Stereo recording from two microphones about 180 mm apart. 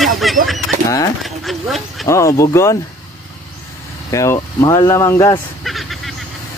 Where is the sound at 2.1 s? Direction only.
15° left (ahead or behind).